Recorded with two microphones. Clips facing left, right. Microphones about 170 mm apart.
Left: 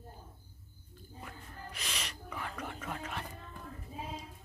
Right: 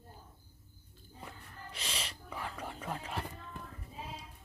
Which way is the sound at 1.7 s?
30° right (ahead or behind).